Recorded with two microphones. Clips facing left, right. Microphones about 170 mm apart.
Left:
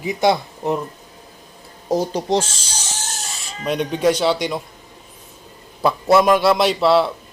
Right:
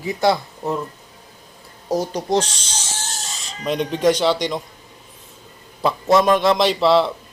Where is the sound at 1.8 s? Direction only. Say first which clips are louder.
Left 2 dB; 25° left (ahead or behind).